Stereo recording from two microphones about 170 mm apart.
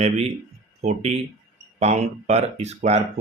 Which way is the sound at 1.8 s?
40° right (ahead or behind).